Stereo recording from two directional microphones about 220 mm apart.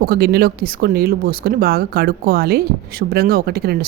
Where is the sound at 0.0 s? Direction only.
45° right (ahead or behind).